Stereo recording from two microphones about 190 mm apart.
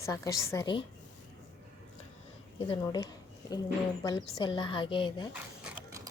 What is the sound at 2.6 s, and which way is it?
Speech, 25° left (ahead or behind).